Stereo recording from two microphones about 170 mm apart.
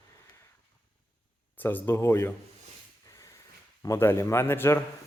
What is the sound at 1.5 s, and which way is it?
Speech, 10° left (ahead or behind).